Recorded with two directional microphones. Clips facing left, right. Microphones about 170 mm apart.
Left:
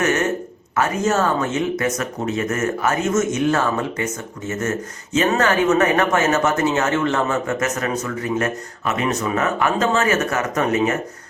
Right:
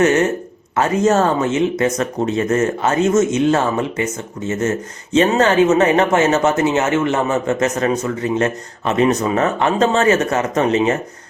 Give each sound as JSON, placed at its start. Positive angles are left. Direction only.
{"t": 0.0, "sound": "a sound", "side_deg": -30}
{"t": 0.8, "sound": "speech", "side_deg": -35}
{"t": 1.4, "sound": "speech", "side_deg": -25}
{"t": 5.1, "sound": "speech", "side_deg": -30}